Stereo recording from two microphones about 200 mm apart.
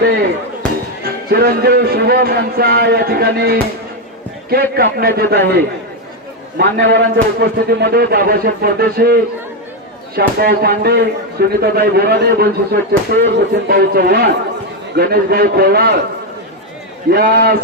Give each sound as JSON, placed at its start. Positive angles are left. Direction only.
{"t": 1.0, "sound": "speech", "side_deg": -50}
{"t": 17.1, "sound": "speech", "side_deg": -45}